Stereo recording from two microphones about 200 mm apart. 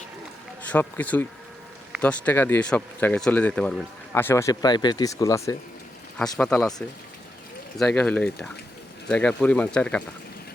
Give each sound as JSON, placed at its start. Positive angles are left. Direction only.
{"t": 0.7, "sound": "speech", "side_deg": 10}
{"t": 7.8, "sound": "speech", "side_deg": 5}